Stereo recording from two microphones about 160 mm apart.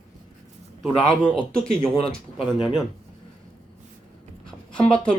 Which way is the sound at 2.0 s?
35° left (ahead or behind).